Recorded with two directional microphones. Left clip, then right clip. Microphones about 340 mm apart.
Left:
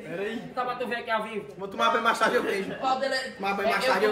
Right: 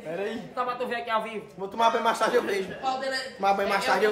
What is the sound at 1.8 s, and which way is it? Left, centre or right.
Speech, right.